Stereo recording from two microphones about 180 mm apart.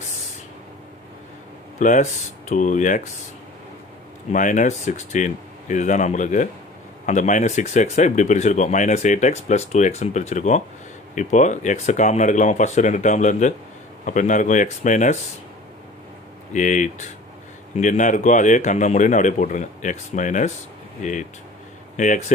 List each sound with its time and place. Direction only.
1.8 s a man's voice: 40° left (ahead or behind)
4.3 s a man's voice: 45° left (ahead or behind)
16.5 s a man's voice: 45° left (ahead or behind)
21.9 s speech: 45° left (ahead or behind)